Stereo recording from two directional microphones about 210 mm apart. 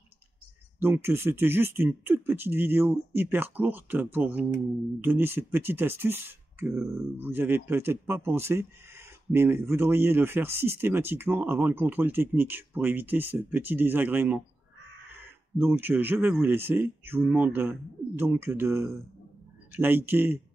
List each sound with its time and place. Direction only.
0.7 s speech: 10° right (ahead or behind)
15.5 s speech: 10° right (ahead or behind)